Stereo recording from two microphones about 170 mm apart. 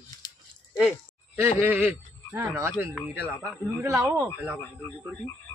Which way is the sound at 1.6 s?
10° right (ahead or behind).